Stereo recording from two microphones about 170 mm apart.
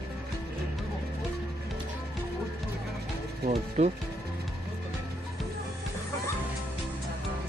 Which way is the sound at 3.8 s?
40° right (ahead or behind).